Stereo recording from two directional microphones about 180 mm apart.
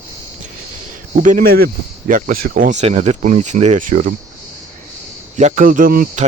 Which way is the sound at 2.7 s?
40° right (ahead or behind).